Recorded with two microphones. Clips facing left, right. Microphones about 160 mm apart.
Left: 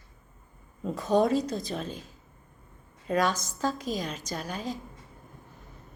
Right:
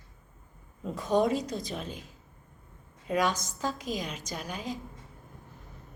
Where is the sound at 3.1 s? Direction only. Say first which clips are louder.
Left 2 dB; 15° right (ahead or behind).